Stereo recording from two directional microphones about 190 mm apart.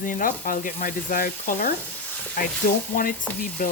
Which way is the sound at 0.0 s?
45° left (ahead or behind).